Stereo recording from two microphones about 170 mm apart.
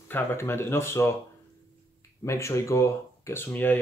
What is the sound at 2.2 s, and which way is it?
Speech, 15° left (ahead or behind).